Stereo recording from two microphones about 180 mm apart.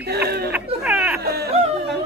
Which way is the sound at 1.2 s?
60° right (ahead or behind).